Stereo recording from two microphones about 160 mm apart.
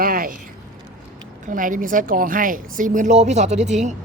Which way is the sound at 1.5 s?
55° right (ahead or behind).